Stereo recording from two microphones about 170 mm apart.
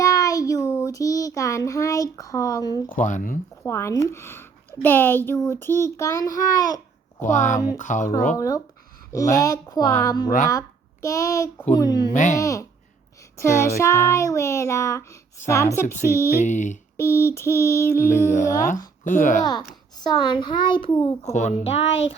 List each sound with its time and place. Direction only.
0.0 s child singing: 20° left (ahead or behind)
2.9 s speech: 50° left (ahead or behind)
3.7 s speech: 15° left (ahead or behind)
7.2 s speech: 50° left (ahead or behind)
8.4 s a child's voice: 20° left (ahead or behind)
12.1 s speech: 45° left (ahead or behind)
12.4 s a child's voice: 20° left (ahead or behind)
16.4 s speech: 45° left (ahead or behind)
17.0 s speech: 15° left (ahead or behind)
18.3 s speech: 50° left (ahead or behind)
19.5 s a child's voice: 25° left (ahead or behind)